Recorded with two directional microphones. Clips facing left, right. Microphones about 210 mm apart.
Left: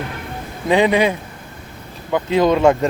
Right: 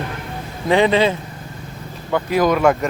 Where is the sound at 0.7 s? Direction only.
15° left (ahead or behind).